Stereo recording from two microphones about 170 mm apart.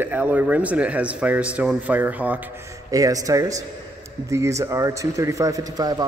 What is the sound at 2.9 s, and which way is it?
Speech, 20° right (ahead or behind).